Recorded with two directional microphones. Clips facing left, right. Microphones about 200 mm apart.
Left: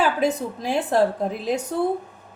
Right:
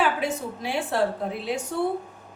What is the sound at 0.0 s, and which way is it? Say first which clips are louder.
Speech: left 4 dB; 40° left (ahead or behind).